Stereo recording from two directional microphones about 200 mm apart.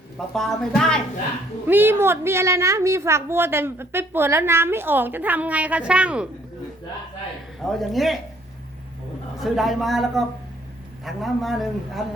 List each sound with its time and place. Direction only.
0.3 s a man's voice: centre (ahead or behind)
1.6 s a woman's voice: 10° right (ahead or behind)
7.6 s a man's voice: centre (ahead or behind)
9.4 s a man's voice: centre (ahead or behind)